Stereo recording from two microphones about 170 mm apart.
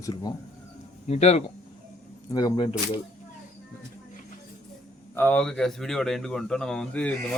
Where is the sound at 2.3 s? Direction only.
20° left (ahead or behind).